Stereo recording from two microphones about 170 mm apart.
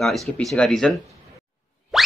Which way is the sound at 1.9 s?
5° right (ahead or behind).